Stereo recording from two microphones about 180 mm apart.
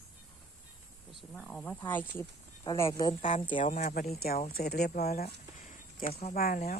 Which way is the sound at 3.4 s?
30° left (ahead or behind).